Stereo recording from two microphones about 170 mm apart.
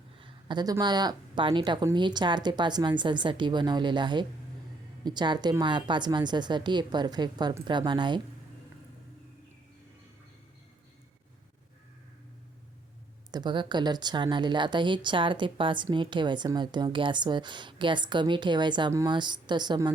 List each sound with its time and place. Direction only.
0.2 s a woman's voice: 25° right (ahead or behind)
13.3 s a woman's voice: 25° right (ahead or behind)